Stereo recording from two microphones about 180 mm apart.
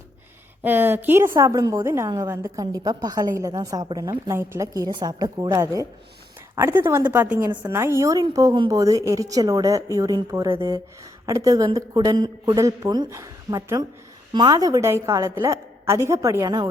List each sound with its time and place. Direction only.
0.6 s a woman's voice: 10° right (ahead or behind)